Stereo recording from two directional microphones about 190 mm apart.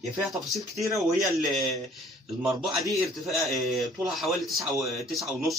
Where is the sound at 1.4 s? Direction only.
Centre (ahead or behind).